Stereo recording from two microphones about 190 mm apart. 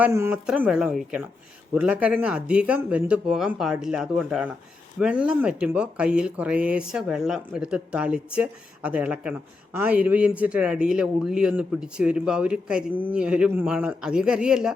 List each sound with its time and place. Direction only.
0.0 s speech: 10° right (ahead or behind)